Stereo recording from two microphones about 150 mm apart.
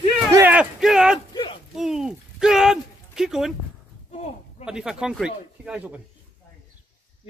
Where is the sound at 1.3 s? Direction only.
35° left (ahead or behind).